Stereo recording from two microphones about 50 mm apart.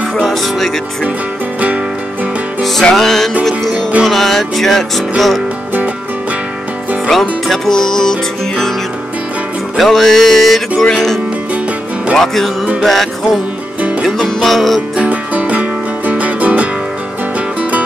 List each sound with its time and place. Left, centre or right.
0.2 s music: centre
2.8 s music: centre
7.1 s music: centre
9.8 s music: centre
12.8 s music: centre
15.0 s music: right